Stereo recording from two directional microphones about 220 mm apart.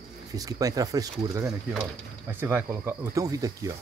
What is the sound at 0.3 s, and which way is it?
Speech, 15° right (ahead or behind).